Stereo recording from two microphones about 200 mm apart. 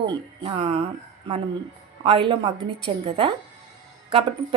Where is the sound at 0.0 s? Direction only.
25° right (ahead or behind).